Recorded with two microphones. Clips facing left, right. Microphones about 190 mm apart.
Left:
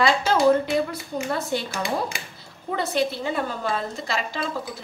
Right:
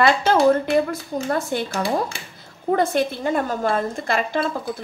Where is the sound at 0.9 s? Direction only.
50° right (ahead or behind).